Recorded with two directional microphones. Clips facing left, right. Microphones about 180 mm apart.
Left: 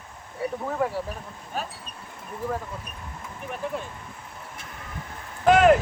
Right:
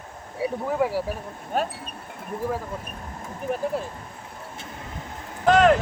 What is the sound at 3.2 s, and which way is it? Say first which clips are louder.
Speech: right 6 dB; 35° right (ahead or behind).